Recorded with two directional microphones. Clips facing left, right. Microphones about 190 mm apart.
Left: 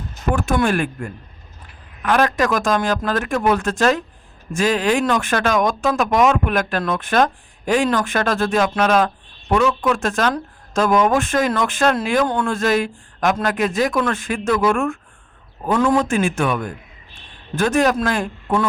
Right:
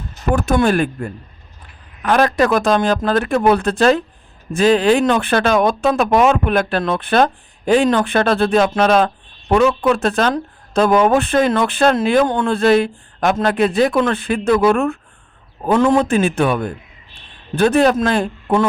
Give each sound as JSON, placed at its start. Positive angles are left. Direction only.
{"t": 0.3, "sound": "speech", "side_deg": -40}
{"t": 15.6, "sound": "a man's voice", "side_deg": -25}